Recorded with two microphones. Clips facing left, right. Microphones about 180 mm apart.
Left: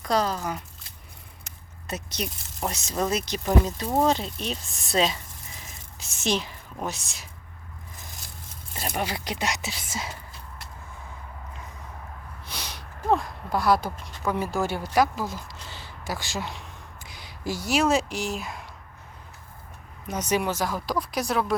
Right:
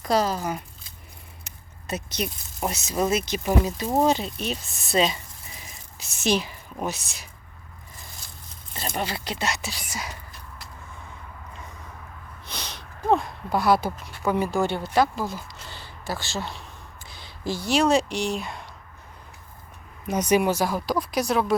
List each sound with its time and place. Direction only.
0.1 s a woman's voice: 5° right (ahead or behind)
8.7 s speech: 10° left (ahead or behind); by 10.1 s 25° left (ahead or behind)
12.5 s speech: 10° left (ahead or behind)
17.0 s a sound: 30° right (ahead or behind)
17.7 s speech: 5° left (ahead or behind)
20.1 s speech: 10° right (ahead or behind)